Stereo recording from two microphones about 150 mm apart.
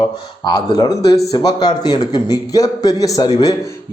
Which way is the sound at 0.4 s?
25° left (ahead or behind).